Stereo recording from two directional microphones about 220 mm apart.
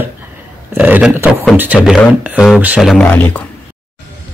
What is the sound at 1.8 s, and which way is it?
Speech, 5° right (ahead or behind).